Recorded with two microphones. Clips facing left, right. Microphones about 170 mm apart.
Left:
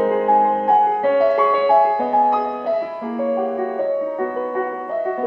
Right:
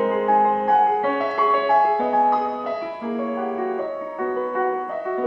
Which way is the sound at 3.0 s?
45° left (ahead or behind).